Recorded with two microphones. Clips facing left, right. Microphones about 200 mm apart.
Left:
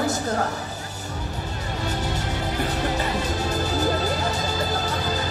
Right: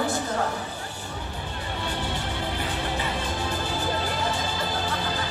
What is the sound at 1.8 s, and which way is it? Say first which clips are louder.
Music: left 3 dB; 40° left (ahead or behind).